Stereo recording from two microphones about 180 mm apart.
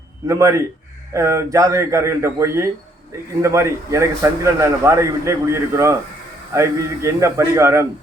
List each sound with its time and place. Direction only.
0.3 s a man's voice: 15° right (ahead or behind)